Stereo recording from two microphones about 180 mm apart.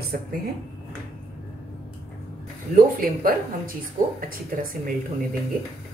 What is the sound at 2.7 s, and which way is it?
Speech, 50° right (ahead or behind).